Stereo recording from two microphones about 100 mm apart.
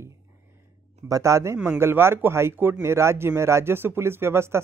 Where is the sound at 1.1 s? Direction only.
30° right (ahead or behind).